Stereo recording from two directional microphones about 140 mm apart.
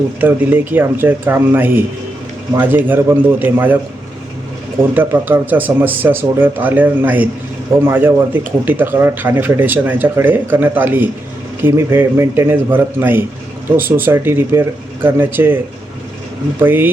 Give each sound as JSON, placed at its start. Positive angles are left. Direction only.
{"t": 0.2, "sound": "speech", "side_deg": -15}
{"t": 4.8, "sound": "speech", "side_deg": -15}
{"t": 16.6, "sound": "speech", "side_deg": -15}